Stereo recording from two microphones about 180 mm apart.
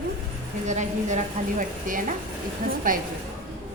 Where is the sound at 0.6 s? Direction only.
40° right (ahead or behind).